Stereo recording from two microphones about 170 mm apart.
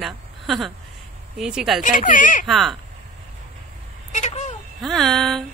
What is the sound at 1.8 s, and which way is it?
Speech, 50° left (ahead or behind).